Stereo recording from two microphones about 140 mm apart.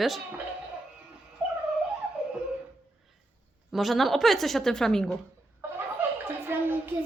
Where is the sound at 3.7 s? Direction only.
Centre (ahead or behind).